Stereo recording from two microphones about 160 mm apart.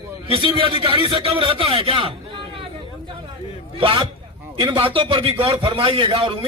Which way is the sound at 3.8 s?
35° right (ahead or behind).